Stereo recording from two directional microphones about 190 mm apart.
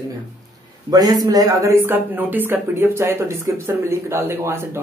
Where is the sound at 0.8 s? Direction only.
20° right (ahead or behind).